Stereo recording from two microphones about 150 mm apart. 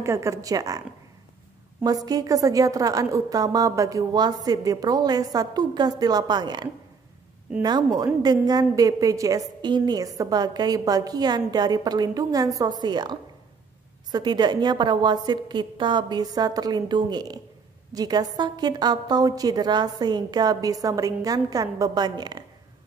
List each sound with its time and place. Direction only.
0.0 s a woman's voice: 20° right (ahead or behind)